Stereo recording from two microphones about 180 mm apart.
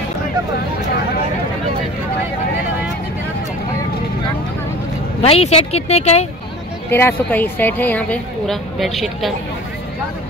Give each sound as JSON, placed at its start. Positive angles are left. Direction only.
{"t": 5.2, "sound": "speech", "side_deg": 35}
{"t": 6.9, "sound": "a woman's voice", "side_deg": 10}